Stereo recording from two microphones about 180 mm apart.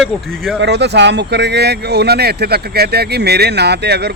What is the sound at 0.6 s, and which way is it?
Speech, 70° right (ahead or behind).